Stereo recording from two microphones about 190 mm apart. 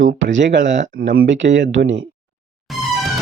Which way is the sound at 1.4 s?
70° right (ahead or behind).